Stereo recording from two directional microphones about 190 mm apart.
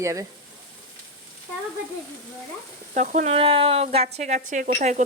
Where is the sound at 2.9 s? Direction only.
40° right (ahead or behind).